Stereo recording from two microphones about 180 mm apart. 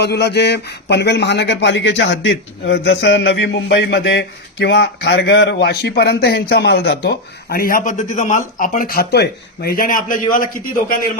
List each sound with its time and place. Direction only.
0.0 s speech: 65° left (ahead or behind); by 11.0 s 50° left (ahead or behind)